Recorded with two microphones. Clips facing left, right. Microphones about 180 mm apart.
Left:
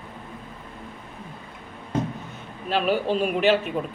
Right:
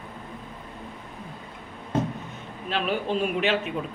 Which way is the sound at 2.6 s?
45° left (ahead or behind).